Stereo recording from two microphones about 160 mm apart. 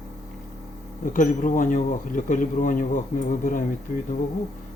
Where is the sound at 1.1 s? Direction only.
55° left (ahead or behind).